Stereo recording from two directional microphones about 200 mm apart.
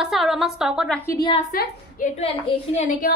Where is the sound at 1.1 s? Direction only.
25° left (ahead or behind).